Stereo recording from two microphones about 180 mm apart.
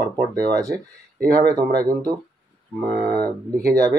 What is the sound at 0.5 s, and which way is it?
Speech, 20° right (ahead or behind).